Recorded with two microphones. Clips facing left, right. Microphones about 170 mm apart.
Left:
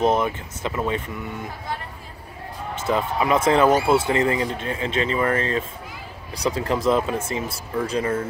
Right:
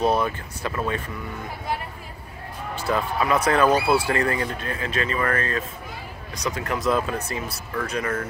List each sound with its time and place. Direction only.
0.0 s speech: 20° left (ahead or behind)
2.7 s speech: 20° left (ahead or behind)